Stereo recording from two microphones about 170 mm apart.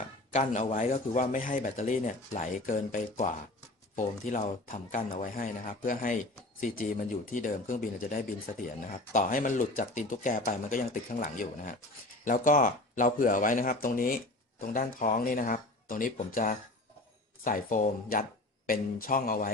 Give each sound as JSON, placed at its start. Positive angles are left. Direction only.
{"t": 0.3, "sound": "speech", "side_deg": 45}